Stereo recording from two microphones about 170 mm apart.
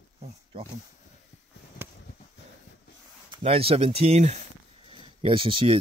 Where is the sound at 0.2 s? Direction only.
30° right (ahead or behind).